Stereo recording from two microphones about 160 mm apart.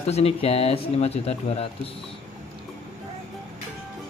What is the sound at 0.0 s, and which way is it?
Speech, 40° left (ahead or behind).